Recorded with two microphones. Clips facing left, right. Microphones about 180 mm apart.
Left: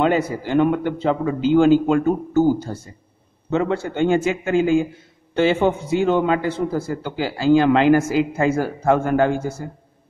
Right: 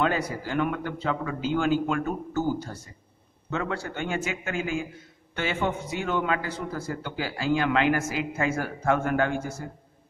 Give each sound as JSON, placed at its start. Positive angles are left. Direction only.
{"t": 0.0, "sound": "a man's voice", "side_deg": 25}